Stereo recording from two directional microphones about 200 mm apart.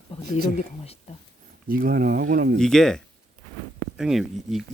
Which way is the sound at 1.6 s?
45° right (ahead or behind).